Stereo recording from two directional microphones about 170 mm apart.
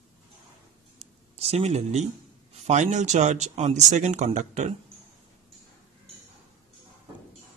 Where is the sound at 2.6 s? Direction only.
45° right (ahead or behind).